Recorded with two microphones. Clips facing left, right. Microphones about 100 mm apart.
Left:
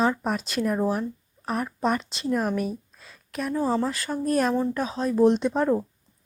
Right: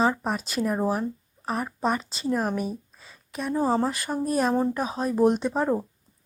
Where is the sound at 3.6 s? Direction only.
40° right (ahead or behind).